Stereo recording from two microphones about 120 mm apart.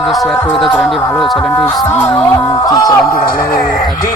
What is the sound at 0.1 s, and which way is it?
Speech, centre (ahead or behind).